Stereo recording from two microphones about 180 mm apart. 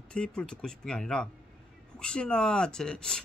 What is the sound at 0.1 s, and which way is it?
Speech, 5° left (ahead or behind).